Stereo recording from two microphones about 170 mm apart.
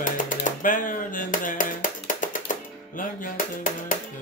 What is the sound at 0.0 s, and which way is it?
Music, 50° left (ahead or behind).